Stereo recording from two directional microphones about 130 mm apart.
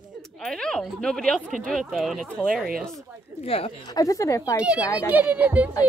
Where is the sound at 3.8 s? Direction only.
30° left (ahead or behind).